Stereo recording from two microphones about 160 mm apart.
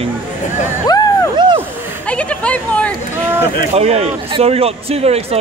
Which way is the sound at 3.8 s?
40° right (ahead or behind).